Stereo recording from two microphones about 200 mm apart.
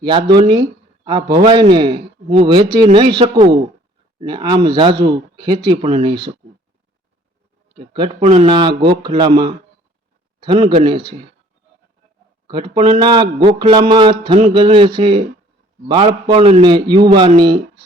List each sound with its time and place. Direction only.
0.0 s speech: 25° right (ahead or behind)
7.8 s speech: 25° right (ahead or behind)
12.5 s speech: 25° right (ahead or behind)